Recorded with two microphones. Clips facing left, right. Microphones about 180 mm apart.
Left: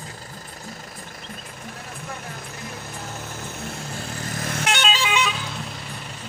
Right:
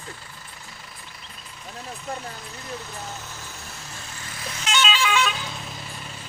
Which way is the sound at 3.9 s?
40° left (ahead or behind).